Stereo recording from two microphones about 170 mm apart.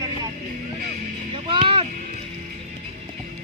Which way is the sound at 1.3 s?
30° right (ahead or behind).